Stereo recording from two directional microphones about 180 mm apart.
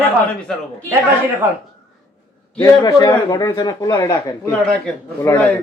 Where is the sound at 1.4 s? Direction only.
10° right (ahead or behind).